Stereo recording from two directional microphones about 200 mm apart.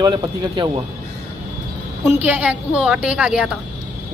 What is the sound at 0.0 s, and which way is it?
Speech, 20° right (ahead or behind).